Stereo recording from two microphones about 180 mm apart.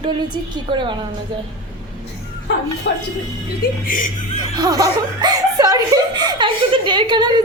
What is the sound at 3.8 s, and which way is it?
Speech, 45° left (ahead or behind).